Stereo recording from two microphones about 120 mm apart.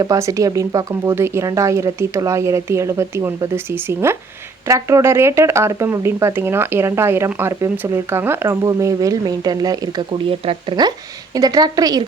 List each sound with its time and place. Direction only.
0.0 s speech: 25° right (ahead or behind)
10.2 s speech: 50° right (ahead or behind)
11.3 s a woman's voice: 30° right (ahead or behind)